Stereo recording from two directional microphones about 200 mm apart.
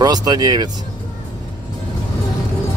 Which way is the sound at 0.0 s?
20° right (ahead or behind).